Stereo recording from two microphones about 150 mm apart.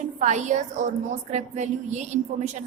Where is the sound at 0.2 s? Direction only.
50° right (ahead or behind).